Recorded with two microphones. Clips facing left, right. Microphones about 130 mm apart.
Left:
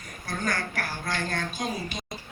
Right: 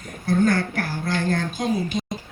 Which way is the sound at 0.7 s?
25° right (ahead or behind).